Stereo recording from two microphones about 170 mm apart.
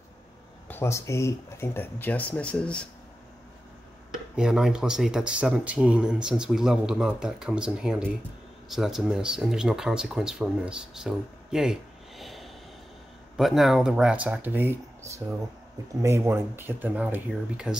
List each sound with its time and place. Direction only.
0.7 s speech: 15° left (ahead or behind)
4.4 s speech: 5° right (ahead or behind)